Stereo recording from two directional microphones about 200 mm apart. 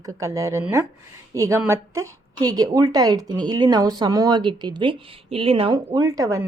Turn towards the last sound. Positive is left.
turn(degrees=-15)  # may be behind; listen again after turning